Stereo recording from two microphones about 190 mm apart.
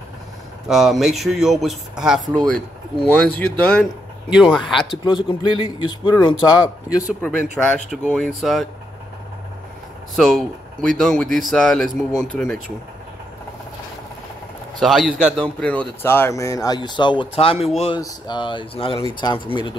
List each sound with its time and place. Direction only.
0.7 s speech: centre (ahead or behind)
4.3 s speech: 5° right (ahead or behind)
5.0 s speech: 25° left (ahead or behind)
7.5 s speech: 5° left (ahead or behind)
10.1 s speech: centre (ahead or behind)
14.8 s speech: centre (ahead or behind); by 19.7 s 25° left (ahead or behind)